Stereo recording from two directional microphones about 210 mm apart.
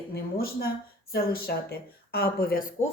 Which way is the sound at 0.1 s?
45° left (ahead or behind).